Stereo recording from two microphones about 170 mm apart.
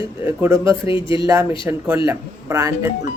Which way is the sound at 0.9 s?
30° left (ahead or behind).